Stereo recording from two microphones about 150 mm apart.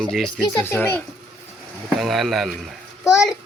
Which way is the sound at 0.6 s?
15° left (ahead or behind).